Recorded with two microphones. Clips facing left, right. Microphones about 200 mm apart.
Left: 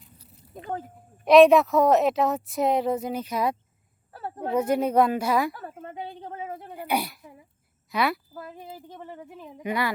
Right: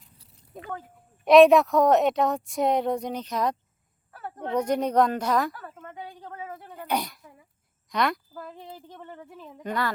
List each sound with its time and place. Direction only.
1.2 s a woman's voice: centre (ahead or behind)
4.1 s a sound: 30° left (ahead or behind)
4.4 s speech: 5° left (ahead or behind)
5.8 s a woman's voice: 30° left (ahead or behind)
6.7 s a sound: 10° left (ahead or behind)
7.9 s speech: 5° left (ahead or behind)